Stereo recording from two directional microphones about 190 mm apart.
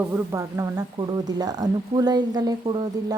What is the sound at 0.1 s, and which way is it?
Speech, 15° right (ahead or behind).